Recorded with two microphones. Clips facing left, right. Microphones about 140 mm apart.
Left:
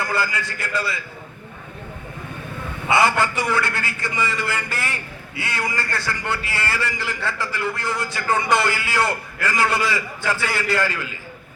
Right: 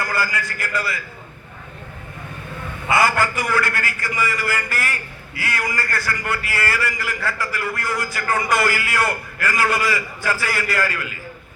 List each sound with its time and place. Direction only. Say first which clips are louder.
0.0 s a man's voice: even; 25° left (ahead or behind)
2.9 s a man's voice: even; 25° left (ahead or behind)